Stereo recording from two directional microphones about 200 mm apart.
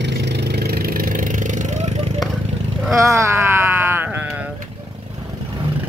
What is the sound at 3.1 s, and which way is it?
Wail, 15° right (ahead or behind).